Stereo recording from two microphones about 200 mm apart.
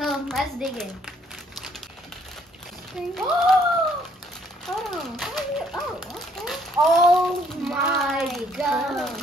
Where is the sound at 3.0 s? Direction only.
5° right (ahead or behind).